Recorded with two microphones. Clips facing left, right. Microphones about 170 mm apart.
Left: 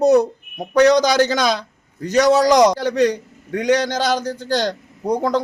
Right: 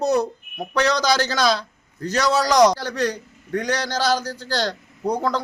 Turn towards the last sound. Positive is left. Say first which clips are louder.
# left 4 dB
turn(degrees=15)  # may be behind; listen again after turning